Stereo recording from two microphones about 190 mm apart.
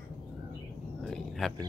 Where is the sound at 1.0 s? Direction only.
5° left (ahead or behind).